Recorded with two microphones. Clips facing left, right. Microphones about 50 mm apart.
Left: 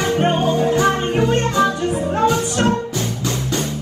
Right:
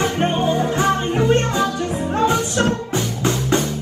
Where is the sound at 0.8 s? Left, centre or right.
Left.